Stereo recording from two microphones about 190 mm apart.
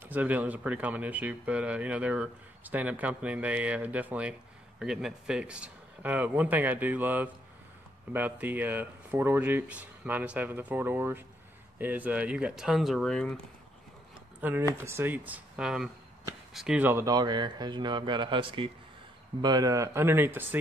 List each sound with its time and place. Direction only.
0.0 s speech: 10° right (ahead or behind)
14.4 s speech: 10° right (ahead or behind)